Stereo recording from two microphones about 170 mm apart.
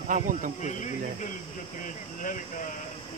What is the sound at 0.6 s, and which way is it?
Speech, 45° left (ahead or behind).